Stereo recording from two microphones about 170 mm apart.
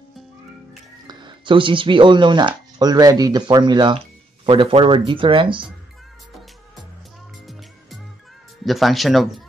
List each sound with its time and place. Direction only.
1.0 s speech: 30° right (ahead or behind)
8.6 s speech: centre (ahead or behind)